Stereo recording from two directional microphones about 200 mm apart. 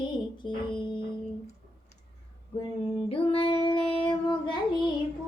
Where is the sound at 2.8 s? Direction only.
25° left (ahead or behind).